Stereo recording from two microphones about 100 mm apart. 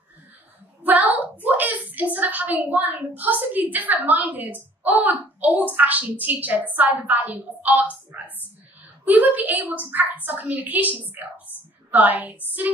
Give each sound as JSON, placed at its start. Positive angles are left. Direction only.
{"t": 0.8, "sound": "a woman's voice", "side_deg": -15}